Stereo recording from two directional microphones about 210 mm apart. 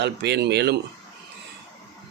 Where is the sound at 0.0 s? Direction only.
55° right (ahead or behind).